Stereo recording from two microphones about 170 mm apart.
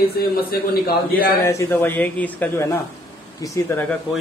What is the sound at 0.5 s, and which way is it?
Speech, 65° left (ahead or behind).